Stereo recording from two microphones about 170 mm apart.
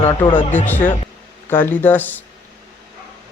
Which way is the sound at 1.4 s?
10° left (ahead or behind).